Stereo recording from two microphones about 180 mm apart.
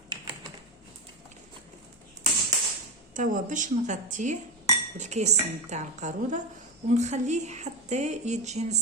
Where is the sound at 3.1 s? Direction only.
45° right (ahead or behind).